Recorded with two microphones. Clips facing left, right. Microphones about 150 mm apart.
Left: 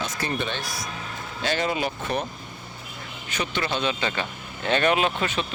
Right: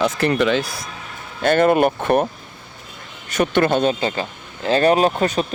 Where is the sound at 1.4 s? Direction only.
55° right (ahead or behind).